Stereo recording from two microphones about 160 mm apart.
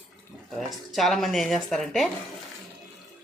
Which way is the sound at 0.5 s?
Centre (ahead or behind).